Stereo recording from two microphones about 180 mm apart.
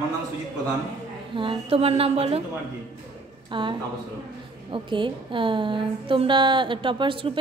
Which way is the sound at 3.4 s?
25° right (ahead or behind).